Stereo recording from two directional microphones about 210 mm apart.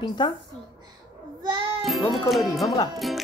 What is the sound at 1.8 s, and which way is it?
A child's voice, centre (ahead or behind).